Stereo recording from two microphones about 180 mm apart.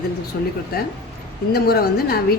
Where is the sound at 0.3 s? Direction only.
55° left (ahead or behind).